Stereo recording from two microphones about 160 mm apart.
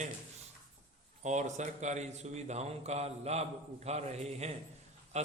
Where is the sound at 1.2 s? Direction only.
45° right (ahead or behind).